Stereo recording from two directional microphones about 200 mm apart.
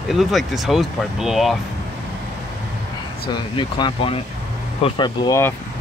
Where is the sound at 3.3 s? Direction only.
25° left (ahead or behind).